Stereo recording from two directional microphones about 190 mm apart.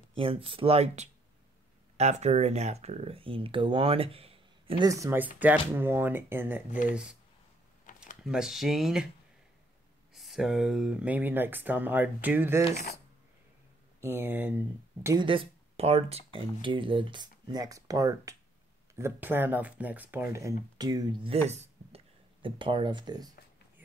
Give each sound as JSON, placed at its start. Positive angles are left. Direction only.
{"t": 0.1, "sound": "speech", "side_deg": -30}
{"t": 4.8, "sound": "speech", "side_deg": -15}
{"t": 7.9, "sound": "a sound", "side_deg": 45}
{"t": 8.2, "sound": "speech", "side_deg": -5}
{"t": 10.1, "sound": "speech", "side_deg": 0}
{"t": 14.0, "sound": "speech", "side_deg": -10}
{"t": 15.0, "sound": "speech", "side_deg": -25}
{"t": 21.5, "sound": "a sound", "side_deg": -35}